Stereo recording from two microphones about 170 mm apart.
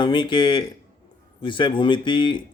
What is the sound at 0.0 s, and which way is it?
Speech, 25° left (ahead or behind).